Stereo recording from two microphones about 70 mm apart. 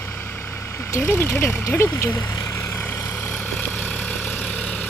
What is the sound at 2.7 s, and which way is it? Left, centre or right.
Vehicle, left.